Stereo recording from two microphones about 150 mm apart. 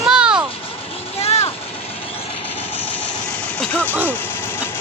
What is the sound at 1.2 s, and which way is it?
Vehicle, 45° left (ahead or behind).